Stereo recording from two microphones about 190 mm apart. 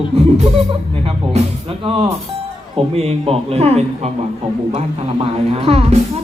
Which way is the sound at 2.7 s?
30° right (ahead or behind).